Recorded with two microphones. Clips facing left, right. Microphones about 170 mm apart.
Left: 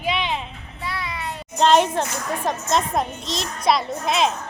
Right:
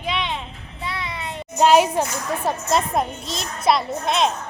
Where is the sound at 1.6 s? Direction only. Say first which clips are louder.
Right 1 dB; 5° right (ahead or behind).